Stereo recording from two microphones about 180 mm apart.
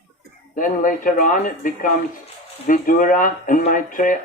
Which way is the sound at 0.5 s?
50° left (ahead or behind).